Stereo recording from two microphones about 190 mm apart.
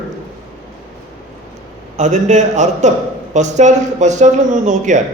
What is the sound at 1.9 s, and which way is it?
A man's voice, 40° right (ahead or behind).